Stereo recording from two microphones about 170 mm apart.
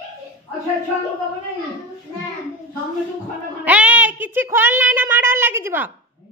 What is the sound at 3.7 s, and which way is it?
A woman's voice, 10° right (ahead or behind).